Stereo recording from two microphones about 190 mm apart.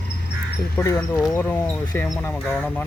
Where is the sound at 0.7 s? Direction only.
15° left (ahead or behind).